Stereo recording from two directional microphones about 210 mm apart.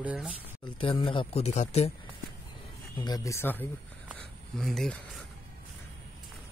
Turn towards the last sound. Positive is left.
turn(degrees=0)  # may be behind; listen again after turning